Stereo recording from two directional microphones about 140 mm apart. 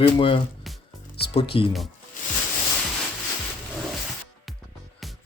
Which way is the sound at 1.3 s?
40° left (ahead or behind).